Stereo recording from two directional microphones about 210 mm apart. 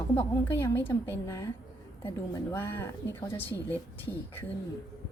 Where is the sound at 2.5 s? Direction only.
10° left (ahead or behind).